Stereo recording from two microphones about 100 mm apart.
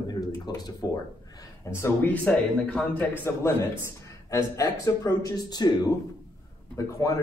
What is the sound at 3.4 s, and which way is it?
Speech, 30° left (ahead or behind).